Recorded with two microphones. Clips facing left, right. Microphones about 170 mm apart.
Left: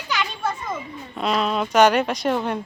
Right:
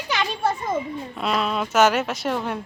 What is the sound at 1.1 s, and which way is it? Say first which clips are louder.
Speech: left 2 dB; centre (ahead or behind).